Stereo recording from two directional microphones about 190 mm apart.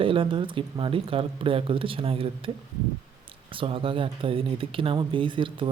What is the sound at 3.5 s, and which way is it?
Speech, 30° right (ahead or behind).